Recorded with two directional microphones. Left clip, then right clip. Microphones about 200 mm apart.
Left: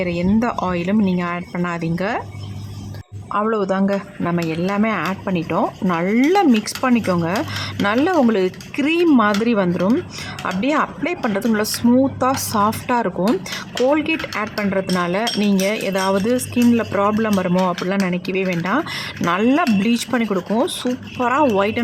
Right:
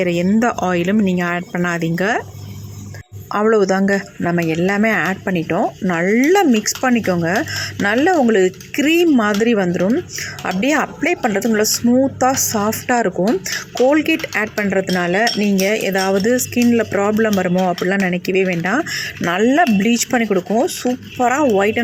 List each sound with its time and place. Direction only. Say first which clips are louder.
0.0 s speech: right 4 dB; 10° right (ahead or behind)
3.3 s speech: right 5 dB; 10° right (ahead or behind)
17.6 s speech: right 2 dB; 5° left (ahead or behind)
17.8 s speech: right 4 dB; 10° right (ahead or behind)